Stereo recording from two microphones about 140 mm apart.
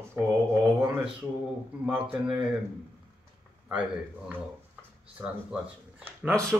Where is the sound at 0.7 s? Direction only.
15° right (ahead or behind).